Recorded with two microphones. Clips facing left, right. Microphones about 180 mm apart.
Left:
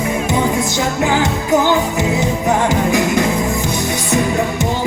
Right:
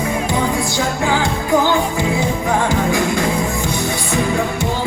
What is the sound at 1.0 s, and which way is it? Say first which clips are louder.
Music: left 4 dB; 20° left (ahead or behind).